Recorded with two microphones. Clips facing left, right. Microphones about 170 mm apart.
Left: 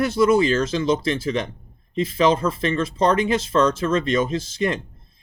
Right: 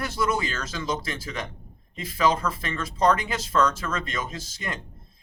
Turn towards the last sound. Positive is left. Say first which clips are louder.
# left 12 dB
turn(degrees=25)  # may be behind; listen again after turning